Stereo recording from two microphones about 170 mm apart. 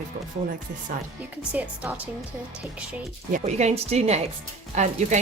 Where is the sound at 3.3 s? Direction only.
40° right (ahead or behind).